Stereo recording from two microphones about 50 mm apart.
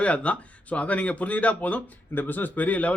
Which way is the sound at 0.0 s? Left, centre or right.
Left.